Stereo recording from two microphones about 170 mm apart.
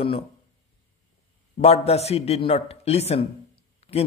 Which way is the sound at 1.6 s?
35° left (ahead or behind).